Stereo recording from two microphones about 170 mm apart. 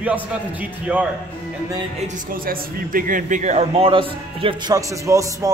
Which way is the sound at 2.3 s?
55° right (ahead or behind).